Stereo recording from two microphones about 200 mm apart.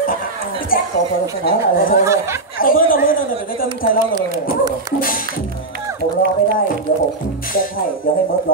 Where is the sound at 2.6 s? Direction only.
45° left (ahead or behind).